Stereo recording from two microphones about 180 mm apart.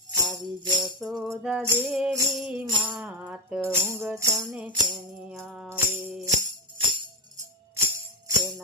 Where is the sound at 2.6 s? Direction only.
25° right (ahead or behind).